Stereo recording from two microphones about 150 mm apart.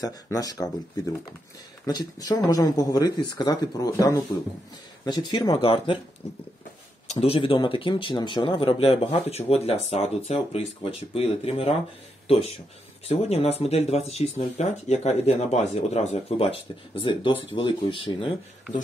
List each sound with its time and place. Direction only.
0.0 s speech: 25° left (ahead or behind)
1.9 s speech: 25° left (ahead or behind)
5.6 s speech: 40° left (ahead or behind)
7.1 s speech: 40° left (ahead or behind)